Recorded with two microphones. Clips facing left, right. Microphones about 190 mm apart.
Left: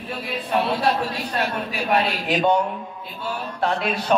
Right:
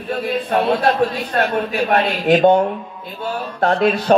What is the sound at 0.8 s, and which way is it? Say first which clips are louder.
A man's voice: right 5 dB; 55° right (ahead or behind).